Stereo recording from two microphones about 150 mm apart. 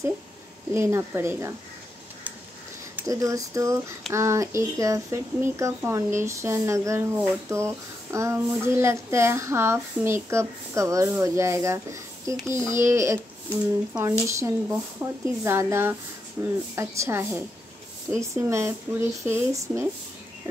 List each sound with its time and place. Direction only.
0.7 s speech: 15° right (ahead or behind)
3.1 s speech: 20° right (ahead or behind)
14.3 s speech: 15° right (ahead or behind)